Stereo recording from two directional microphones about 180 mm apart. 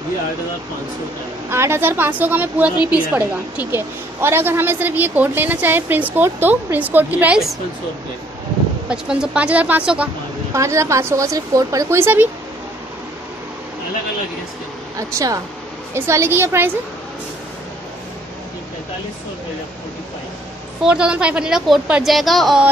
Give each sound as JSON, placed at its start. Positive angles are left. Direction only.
{"t": 1.5, "sound": "a woman's voice", "side_deg": -15}
{"t": 8.8, "sound": "a woman's voice", "side_deg": -5}
{"t": 15.0, "sound": "a woman's voice", "side_deg": -20}
{"t": 20.8, "sound": "a woman's voice", "side_deg": -5}